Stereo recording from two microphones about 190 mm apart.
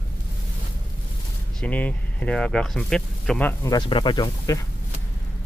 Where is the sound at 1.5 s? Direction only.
10° left (ahead or behind).